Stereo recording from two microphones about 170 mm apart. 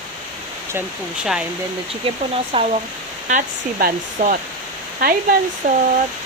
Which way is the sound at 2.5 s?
30° right (ahead or behind).